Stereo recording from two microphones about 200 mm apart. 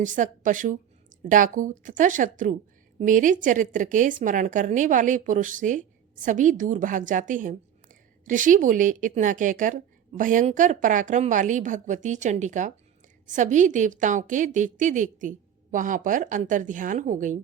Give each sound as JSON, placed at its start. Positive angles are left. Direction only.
{"t": 0.0, "sound": "a woman's voice", "side_deg": -40}